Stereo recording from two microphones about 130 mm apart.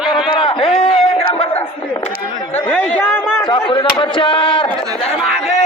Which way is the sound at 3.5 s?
40° left (ahead or behind).